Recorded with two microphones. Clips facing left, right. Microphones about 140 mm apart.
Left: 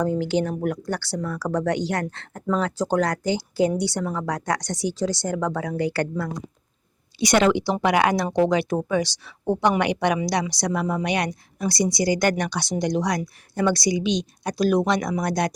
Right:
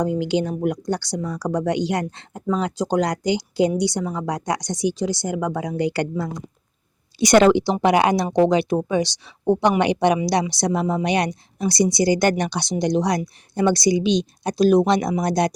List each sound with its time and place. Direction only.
0.0 s speech: 15° right (ahead or behind)
7.2 s speech: 40° right (ahead or behind)
7.5 s a woman's voice: 25° right (ahead or behind)